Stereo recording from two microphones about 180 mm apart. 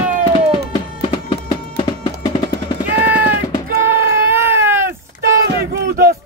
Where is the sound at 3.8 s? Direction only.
10° right (ahead or behind).